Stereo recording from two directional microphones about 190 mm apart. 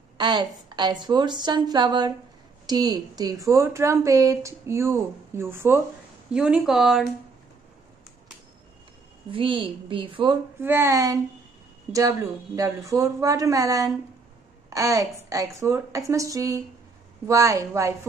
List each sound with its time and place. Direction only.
0.2 s a woman's voice: 25° right (ahead or behind); by 7.1 s centre (ahead or behind)
9.3 s a woman's voice: 25° right (ahead or behind)
10.6 s a woman's voice: 10° right (ahead or behind)